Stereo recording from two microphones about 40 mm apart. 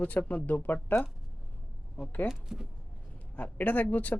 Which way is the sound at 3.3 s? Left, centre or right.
Left.